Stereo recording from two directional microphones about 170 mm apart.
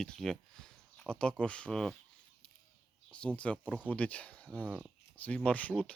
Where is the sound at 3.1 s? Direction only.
5° left (ahead or behind).